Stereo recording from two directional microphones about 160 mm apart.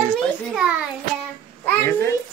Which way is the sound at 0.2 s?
Centre (ahead or behind).